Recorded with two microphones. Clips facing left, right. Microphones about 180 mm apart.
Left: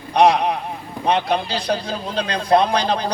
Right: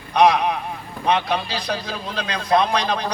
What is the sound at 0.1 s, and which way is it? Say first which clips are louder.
A man's voice: left 1 dB; 30° left (ahead or behind).